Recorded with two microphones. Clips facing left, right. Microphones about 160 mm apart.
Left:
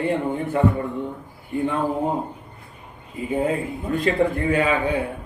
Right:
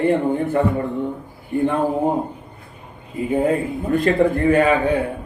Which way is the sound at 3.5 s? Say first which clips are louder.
Right 5 dB; 50° right (ahead or behind).